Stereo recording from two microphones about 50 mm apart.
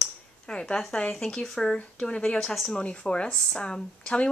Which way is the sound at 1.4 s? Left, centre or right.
Centre.